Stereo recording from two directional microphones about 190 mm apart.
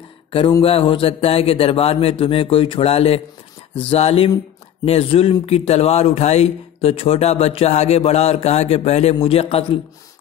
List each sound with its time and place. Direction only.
0.3 s a man's voice: 30° left (ahead or behind)